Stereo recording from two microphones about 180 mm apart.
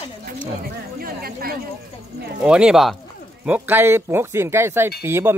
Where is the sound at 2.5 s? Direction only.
5° right (ahead or behind).